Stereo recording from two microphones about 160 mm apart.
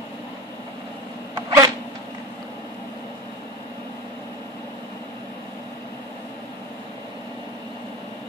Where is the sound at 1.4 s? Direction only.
20° right (ahead or behind).